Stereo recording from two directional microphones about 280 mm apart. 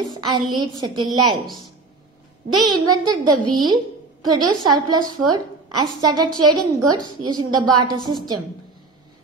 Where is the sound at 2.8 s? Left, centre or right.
Centre.